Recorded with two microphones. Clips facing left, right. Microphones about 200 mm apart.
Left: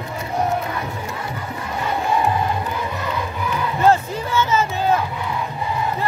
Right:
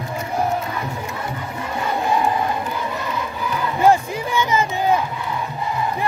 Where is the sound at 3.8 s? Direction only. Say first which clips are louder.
Right 1 dB; 15° right (ahead or behind).